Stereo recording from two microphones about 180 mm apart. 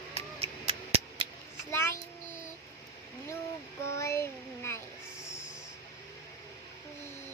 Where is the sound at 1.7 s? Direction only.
15° left (ahead or behind).